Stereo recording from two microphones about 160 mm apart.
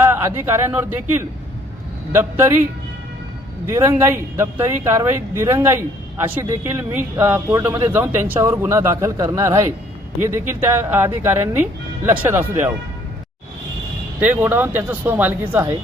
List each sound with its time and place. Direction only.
0.0 s speech: 15° right (ahead or behind)
3.7 s speech: 15° right (ahead or behind)
14.2 s speech: 10° right (ahead or behind)